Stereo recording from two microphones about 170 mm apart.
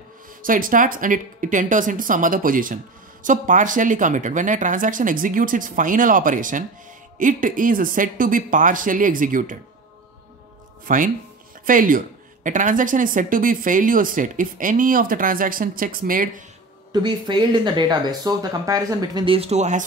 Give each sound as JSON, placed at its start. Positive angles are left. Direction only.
{"t": 0.4, "sound": "a woman's voice", "side_deg": -55}
{"t": 10.9, "sound": "a woman's voice", "side_deg": -50}
{"t": 16.9, "sound": "speech", "side_deg": -25}